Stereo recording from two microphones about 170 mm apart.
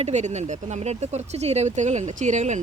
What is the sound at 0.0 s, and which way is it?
Speech, 45° right (ahead or behind).